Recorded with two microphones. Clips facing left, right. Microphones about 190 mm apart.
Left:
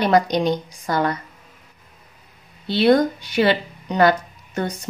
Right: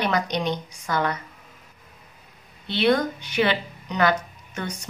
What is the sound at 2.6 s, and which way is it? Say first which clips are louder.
Speech: left 5 dB; 35° left (ahead or behind).